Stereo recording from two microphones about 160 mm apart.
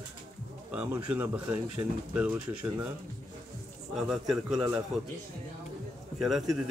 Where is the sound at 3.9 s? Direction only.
Centre (ahead or behind).